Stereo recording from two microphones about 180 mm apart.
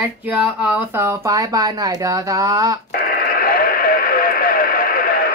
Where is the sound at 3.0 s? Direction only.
55° left (ahead or behind).